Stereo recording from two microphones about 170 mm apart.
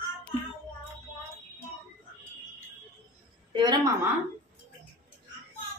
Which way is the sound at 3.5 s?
25° right (ahead or behind).